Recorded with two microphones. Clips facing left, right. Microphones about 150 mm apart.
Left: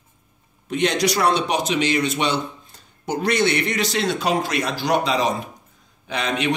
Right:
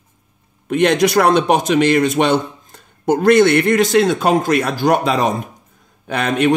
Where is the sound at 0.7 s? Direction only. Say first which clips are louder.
Right 7 dB; 55° right (ahead or behind).